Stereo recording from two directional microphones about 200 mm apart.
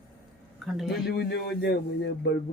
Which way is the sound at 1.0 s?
55° left (ahead or behind).